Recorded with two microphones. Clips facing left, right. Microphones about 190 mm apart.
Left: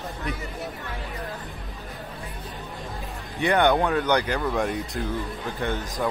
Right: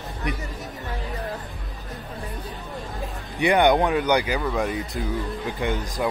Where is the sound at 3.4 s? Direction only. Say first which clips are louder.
Right 2 dB; 15° right (ahead or behind).